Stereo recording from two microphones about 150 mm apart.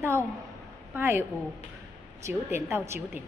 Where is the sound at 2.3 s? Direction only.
15° right (ahead or behind).